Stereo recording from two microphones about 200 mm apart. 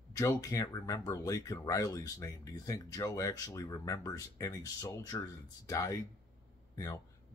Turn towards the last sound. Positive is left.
turn(degrees=15)  # may be behind; listen again after turning